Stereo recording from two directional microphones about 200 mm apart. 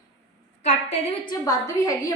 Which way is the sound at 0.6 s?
35° left (ahead or behind).